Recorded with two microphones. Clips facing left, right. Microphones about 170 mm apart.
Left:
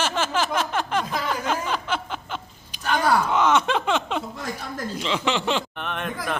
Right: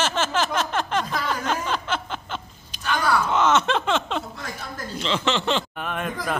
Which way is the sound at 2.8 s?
45° left (ahead or behind).